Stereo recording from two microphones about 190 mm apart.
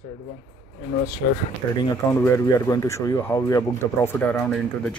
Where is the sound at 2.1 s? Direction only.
15° left (ahead or behind).